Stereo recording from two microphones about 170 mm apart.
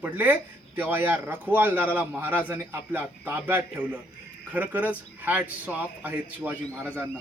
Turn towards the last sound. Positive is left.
turn(degrees=-10)  # may be behind; listen again after turning